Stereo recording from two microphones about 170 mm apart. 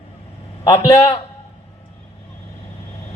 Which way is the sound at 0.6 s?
20° left (ahead or behind).